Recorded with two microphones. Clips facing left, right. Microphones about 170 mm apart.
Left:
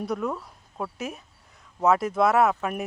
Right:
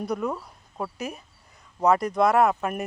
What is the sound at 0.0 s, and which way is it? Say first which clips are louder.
Speech: even; centre (ahead or behind).